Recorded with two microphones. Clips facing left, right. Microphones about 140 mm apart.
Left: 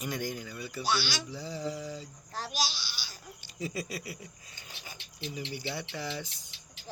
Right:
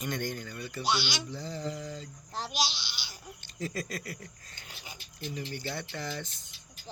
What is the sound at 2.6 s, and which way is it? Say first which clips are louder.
Babbling: right 1 dB; 25° right (ahead or behind).